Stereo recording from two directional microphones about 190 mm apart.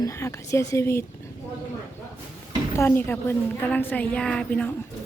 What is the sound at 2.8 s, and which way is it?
A woman's voice, 10° left (ahead or behind).